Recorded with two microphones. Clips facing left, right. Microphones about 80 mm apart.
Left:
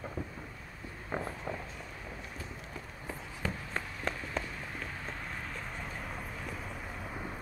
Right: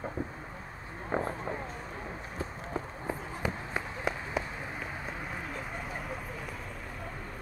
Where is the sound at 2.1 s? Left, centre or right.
Right.